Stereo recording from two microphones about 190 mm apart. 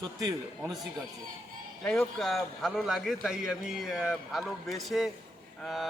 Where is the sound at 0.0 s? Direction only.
20° right (ahead or behind).